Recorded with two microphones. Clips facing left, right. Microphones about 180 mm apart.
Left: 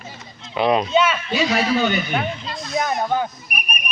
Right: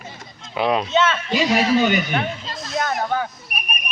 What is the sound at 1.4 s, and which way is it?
Speech, 10° right (ahead or behind).